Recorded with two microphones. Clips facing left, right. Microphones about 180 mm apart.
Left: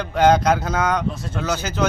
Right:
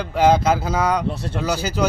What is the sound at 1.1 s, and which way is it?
Speech, 65° right (ahead or behind).